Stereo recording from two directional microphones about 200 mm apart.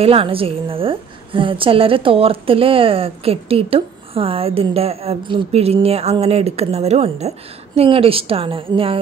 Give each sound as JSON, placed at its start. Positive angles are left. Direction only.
{"t": 0.0, "sound": "a woman's voice", "side_deg": -30}